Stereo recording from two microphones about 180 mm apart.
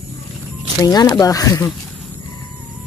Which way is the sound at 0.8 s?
20° left (ahead or behind).